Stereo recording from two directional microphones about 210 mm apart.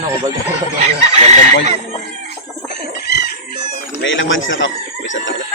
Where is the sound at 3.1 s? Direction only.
50° left (ahead or behind).